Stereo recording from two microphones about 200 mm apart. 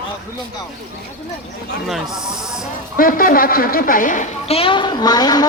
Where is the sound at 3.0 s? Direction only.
45° left (ahead or behind); by 5.5 s 20° left (ahead or behind).